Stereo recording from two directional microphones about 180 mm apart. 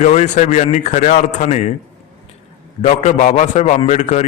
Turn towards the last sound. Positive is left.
turn(degrees=40)  # may be behind; listen again after turning